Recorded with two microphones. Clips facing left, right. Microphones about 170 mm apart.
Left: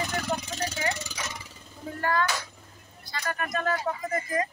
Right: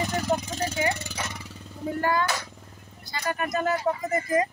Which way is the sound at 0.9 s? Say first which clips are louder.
Right 2 dB; 60° right (ahead or behind).